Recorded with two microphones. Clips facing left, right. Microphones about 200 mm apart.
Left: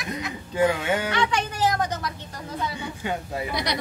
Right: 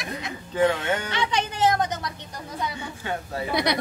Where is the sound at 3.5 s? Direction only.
55° right (ahead or behind).